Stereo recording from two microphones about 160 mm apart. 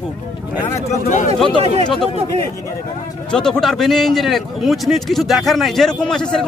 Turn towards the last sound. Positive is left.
turn(degrees=5)  # may be behind; listen again after turning